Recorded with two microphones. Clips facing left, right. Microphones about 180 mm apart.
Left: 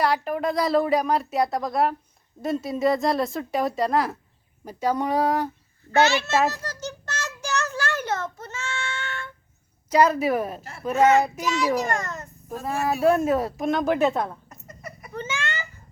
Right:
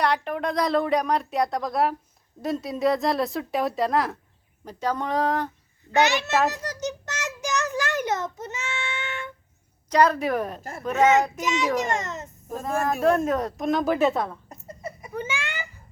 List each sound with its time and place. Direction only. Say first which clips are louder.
0.0 s speech: left 1 dB; 5° left (ahead or behind)
5.9 s a child's voice: left 1 dB; 15° right (ahead or behind)
6.5 s child singing: right 3 dB; 15° right (ahead or behind)
9.9 s speech: left 1 dB; 5° left (ahead or behind)
10.6 s speech: right 5 dB; 45° right (ahead or behind)
11.0 s a child's voice: left 1 dB; 20° right (ahead or behind)
12.6 s speech: left 1 dB; 5° left (ahead or behind)
14.5 s a sound: right 4 dB; 25° right (ahead or behind)
15.1 s a child's voice: left 1 dB; 10° right (ahead or behind)